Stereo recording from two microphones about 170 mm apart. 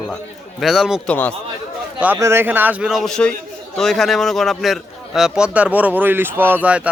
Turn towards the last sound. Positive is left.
turn(degrees=-5)  # may be behind; listen again after turning